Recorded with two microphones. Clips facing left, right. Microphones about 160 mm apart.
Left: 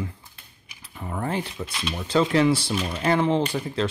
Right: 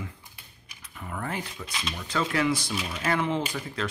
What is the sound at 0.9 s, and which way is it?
Speech, 30° left (ahead or behind).